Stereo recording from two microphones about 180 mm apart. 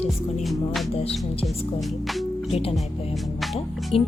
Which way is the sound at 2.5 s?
35° left (ahead or behind).